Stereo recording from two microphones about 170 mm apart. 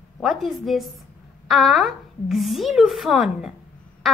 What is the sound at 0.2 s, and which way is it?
A woman's voice, centre (ahead or behind).